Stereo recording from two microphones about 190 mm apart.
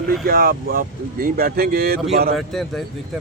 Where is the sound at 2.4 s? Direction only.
Centre (ahead or behind).